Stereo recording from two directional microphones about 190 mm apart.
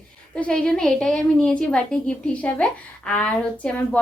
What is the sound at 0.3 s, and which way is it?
A woman's voice, 5° left (ahead or behind).